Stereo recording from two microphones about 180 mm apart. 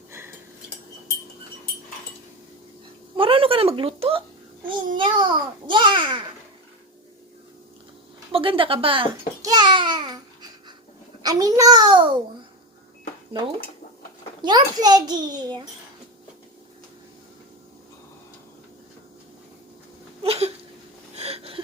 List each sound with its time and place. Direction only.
0.1 s cutlery: 15° right (ahead or behind)
3.2 s a sound: 30° right (ahead or behind)
4.9 s a child's voice: 25° right (ahead or behind)
8.3 s a child's voice: 30° right (ahead or behind)
11.2 s a child's voice: 20° right (ahead or behind)
14.4 s a child's voice: 20° right (ahead or behind)
20.2 s a sound: 35° right (ahead or behind)